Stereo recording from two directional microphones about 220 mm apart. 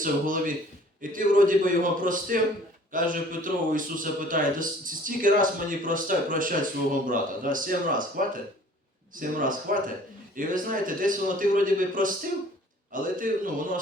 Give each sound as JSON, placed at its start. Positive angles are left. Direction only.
{"t": 0.0, "sound": "a man's voice", "side_deg": -40}